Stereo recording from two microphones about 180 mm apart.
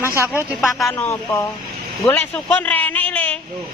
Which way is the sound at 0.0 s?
15° right (ahead or behind).